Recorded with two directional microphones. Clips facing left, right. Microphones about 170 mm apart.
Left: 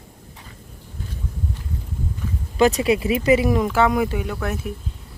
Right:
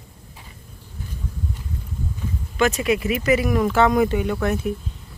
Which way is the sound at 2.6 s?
35° left (ahead or behind).